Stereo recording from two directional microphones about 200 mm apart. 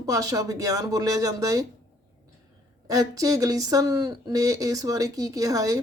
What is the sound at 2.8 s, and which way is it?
Speech, 15° right (ahead or behind).